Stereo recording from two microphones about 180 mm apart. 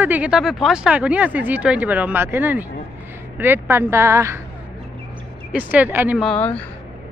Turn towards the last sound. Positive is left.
turn(degrees=5)  # may be behind; listen again after turning